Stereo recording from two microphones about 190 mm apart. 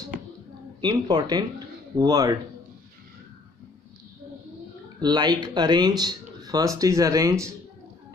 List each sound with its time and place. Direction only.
0.7 s speech: 20° right (ahead or behind)
5.0 s speech: 20° right (ahead or behind)